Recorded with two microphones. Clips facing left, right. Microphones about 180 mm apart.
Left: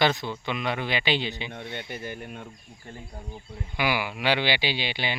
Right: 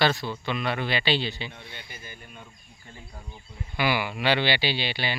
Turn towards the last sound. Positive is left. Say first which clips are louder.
# right 1 dB
turn(degrees=15)  # may be behind; listen again after turning